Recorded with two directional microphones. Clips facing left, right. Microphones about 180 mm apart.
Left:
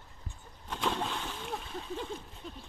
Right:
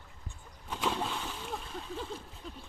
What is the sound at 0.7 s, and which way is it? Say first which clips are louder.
Speech: even; 5° right (ahead or behind).